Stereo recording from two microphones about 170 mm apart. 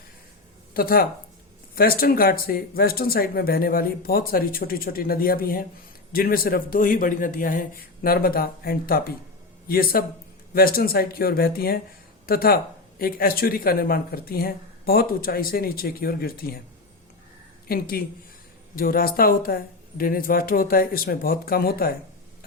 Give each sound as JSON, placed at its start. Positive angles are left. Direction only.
{"t": 0.7, "sound": "speech", "side_deg": 60}
{"t": 17.7, "sound": "speech", "side_deg": 60}